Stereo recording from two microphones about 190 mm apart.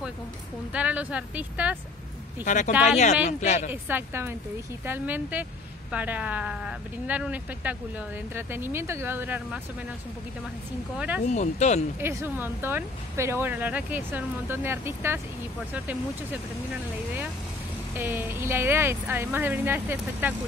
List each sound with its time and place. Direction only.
0.7 s speech: 5° right (ahead or behind)
2.4 s speech: 40° left (ahead or behind)
2.7 s speech: 5° right (ahead or behind)
3.3 s speech: 40° left (ahead or behind)
3.7 s speech: 10° right (ahead or behind)
11.2 s speech: 40° left (ahead or behind)
12.0 s speech: 15° right (ahead or behind)
17.9 s speech: 10° right (ahead or behind)